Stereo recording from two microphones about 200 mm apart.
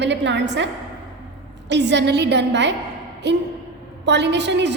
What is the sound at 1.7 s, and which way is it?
A woman's voice, 60° right (ahead or behind).